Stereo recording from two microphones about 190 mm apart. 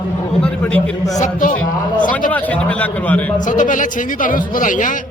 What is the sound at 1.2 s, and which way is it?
Speech, 40° left (ahead or behind).